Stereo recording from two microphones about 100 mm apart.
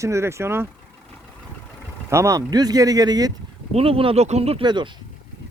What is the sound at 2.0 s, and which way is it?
Speech, 30° right (ahead or behind).